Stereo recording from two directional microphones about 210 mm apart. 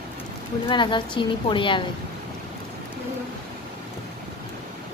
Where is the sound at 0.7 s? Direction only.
20° left (ahead or behind).